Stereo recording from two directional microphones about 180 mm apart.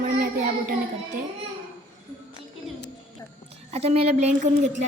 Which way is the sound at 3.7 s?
35° right (ahead or behind).